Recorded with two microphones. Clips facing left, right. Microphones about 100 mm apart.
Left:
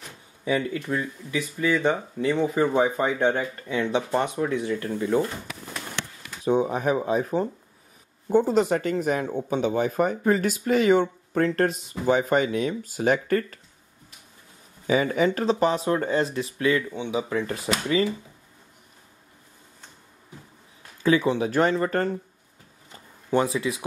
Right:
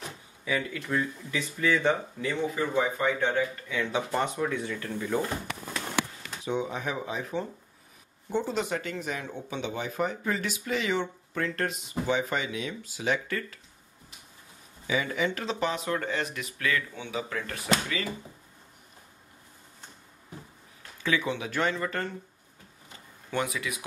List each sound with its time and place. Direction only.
0.5 s speech: 25° left (ahead or behind)
2.3 s speech: 40° left (ahead or behind)
3.9 s speech: 20° left (ahead or behind)
6.4 s speech: 45° left (ahead or behind)
14.9 s speech: 40° left (ahead or behind); by 17.6 s 25° left (ahead or behind)
21.0 s speech: 35° left (ahead or behind)
23.3 s speech: 30° left (ahead or behind)